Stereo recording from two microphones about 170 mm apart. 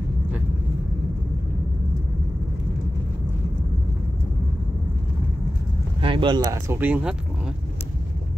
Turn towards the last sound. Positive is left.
turn(degrees=-5)  # may be behind; listen again after turning